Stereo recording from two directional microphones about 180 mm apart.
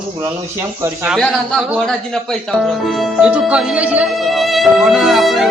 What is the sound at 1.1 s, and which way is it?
Speech, centre (ahead or behind).